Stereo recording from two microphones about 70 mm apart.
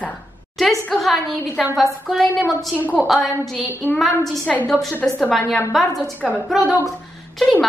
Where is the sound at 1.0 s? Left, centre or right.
Centre.